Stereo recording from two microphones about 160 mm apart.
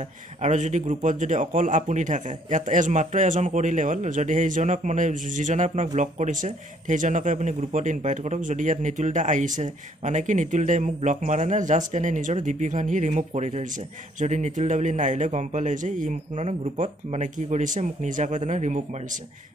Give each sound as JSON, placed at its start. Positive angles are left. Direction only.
{"t": 0.4, "sound": "speech", "side_deg": -50}